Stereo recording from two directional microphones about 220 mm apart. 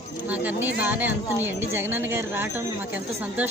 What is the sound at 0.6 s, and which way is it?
Speech, 10° right (ahead or behind).